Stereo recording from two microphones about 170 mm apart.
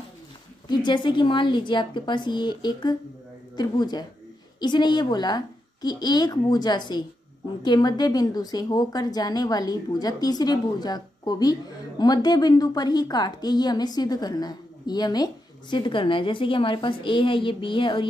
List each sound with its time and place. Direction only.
0.7 s a woman's voice: 25° left (ahead or behind)